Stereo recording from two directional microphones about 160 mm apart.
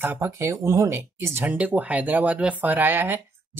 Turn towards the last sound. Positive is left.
turn(degrees=-15)  # may be behind; listen again after turning